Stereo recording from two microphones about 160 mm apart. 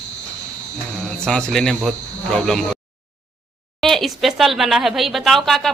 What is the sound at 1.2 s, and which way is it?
Speech, 5° left (ahead or behind).